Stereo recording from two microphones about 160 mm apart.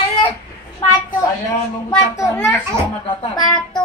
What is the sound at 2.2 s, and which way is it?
Speech, 15° left (ahead or behind).